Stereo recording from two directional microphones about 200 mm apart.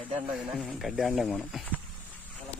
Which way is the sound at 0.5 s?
Centre (ahead or behind).